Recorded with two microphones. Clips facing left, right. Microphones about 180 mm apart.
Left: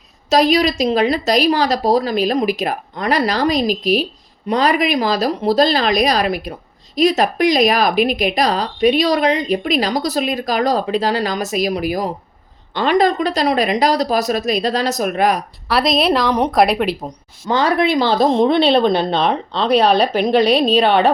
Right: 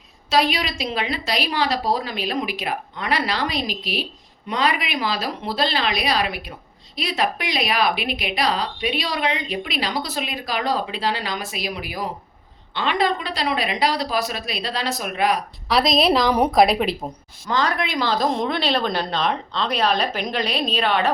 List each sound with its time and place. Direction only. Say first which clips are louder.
0.3 s a woman's voice: left 7 dB; 40° left (ahead or behind)
15.7 s a woman's voice: left 2 dB; centre (ahead or behind)
17.5 s a woman's voice: left 7 dB; 30° left (ahead or behind)